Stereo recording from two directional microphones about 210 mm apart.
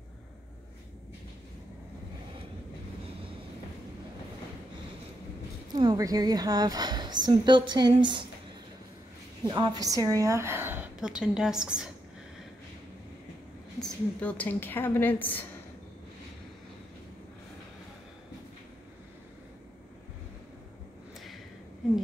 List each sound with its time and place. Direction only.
5.8 s speech: 20° right (ahead or behind)
9.4 s a woman's voice: 20° right (ahead or behind); by 11.9 s 5° right (ahead or behind)
13.7 s a woman's voice: 5° left (ahead or behind)